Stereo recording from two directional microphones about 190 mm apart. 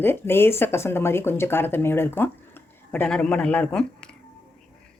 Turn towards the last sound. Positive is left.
turn(degrees=5)  # may be behind; listen again after turning